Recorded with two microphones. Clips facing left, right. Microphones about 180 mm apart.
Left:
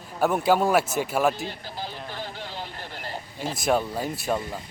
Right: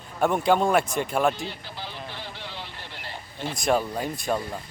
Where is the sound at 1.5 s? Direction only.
40° left (ahead or behind).